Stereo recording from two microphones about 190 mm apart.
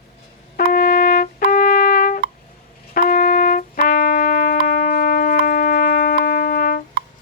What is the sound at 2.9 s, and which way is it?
Music, 50° left (ahead or behind).